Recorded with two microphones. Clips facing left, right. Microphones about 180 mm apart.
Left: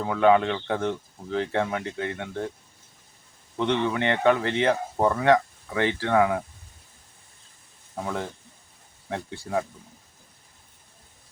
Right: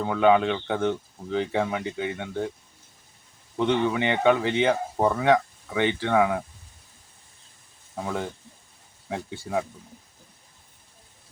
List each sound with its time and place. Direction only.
0.0 s speech: centre (ahead or behind)
3.6 s speech: centre (ahead or behind)
7.9 s speech: 5° right (ahead or behind)